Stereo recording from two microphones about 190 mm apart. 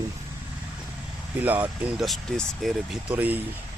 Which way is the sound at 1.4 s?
10° right (ahead or behind).